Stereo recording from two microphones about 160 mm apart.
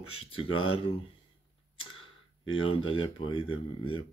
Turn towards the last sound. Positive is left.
turn(degrees=35)  # may be behind; listen again after turning